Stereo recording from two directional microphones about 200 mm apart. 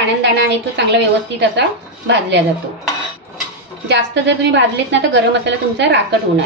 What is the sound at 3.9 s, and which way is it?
A woman's voice, 60° right (ahead or behind).